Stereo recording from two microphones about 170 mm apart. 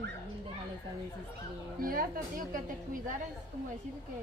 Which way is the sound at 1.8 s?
55° right (ahead or behind).